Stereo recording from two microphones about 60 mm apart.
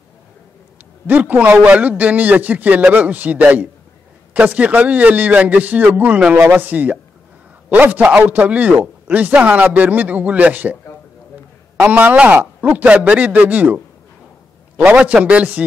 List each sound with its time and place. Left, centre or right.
1.0 s speech: right
11.8 s speech: right
15.0 s speech: right